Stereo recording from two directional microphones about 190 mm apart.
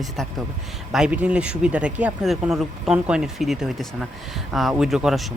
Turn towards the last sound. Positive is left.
turn(degrees=0)  # may be behind; listen again after turning